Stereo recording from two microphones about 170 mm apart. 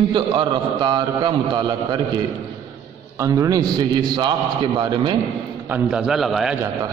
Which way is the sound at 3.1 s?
20° right (ahead or behind).